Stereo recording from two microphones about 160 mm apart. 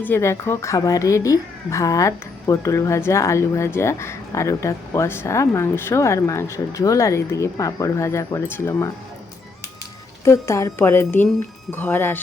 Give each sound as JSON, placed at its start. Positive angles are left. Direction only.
{"t": 0.0, "sound": "a woman's voice", "side_deg": 15}
{"t": 10.2, "sound": "a woman's voice", "side_deg": 20}